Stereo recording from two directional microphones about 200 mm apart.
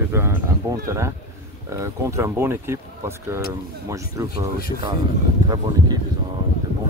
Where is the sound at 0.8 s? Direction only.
15° right (ahead or behind).